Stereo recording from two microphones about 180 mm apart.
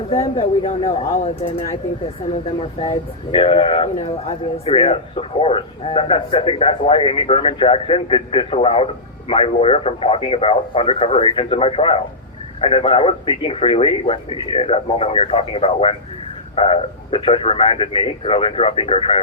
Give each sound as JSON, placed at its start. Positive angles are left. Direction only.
{"t": 0.1, "sound": "speech", "side_deg": 35}
{"t": 2.6, "sound": "speech", "side_deg": 30}